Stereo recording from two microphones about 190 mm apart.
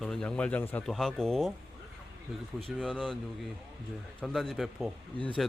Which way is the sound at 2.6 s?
5° left (ahead or behind).